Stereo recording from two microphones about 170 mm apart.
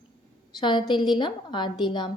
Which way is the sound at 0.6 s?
25° left (ahead or behind).